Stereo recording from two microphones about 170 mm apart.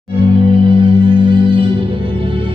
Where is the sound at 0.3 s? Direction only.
30° right (ahead or behind).